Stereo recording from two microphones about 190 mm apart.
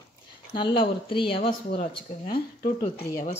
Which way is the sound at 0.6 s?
25° left (ahead or behind).